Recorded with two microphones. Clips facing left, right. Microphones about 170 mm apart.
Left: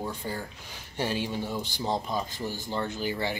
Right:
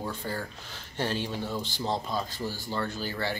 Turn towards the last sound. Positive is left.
turn(degrees=15)  # may be behind; listen again after turning